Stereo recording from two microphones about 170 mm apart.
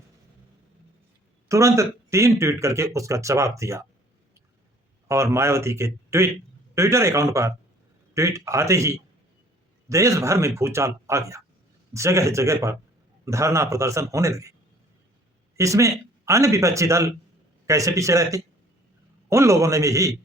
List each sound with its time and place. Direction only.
1.5 s speech: 15° right (ahead or behind)
5.0 s speech: 15° right (ahead or behind)
15.5 s speech: 20° right (ahead or behind)